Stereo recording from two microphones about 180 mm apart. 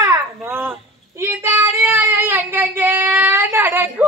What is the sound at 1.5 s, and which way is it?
Child singing, 10° right (ahead or behind).